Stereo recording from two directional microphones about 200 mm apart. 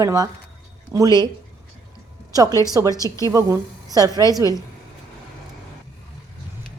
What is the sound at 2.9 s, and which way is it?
Speech, 15° left (ahead or behind).